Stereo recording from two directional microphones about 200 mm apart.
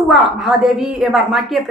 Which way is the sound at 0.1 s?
Centre (ahead or behind).